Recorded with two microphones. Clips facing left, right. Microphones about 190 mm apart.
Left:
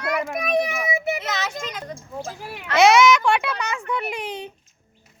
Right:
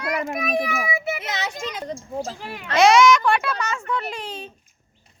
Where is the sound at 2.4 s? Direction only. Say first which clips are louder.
Left 1 dB; 5° left (ahead or behind).